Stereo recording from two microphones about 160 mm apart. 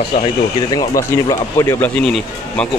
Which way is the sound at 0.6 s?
25° left (ahead or behind).